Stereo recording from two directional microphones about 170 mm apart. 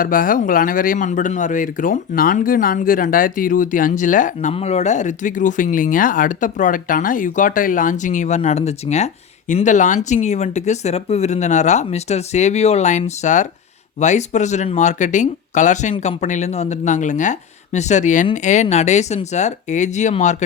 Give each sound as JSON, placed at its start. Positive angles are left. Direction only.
{"t": 0.0, "sound": "speech", "side_deg": 55}